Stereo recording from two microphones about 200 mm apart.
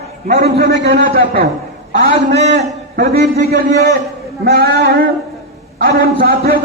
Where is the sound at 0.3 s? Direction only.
50° right (ahead or behind).